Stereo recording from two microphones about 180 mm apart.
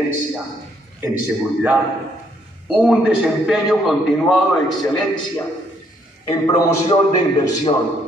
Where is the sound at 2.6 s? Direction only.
5° right (ahead or behind).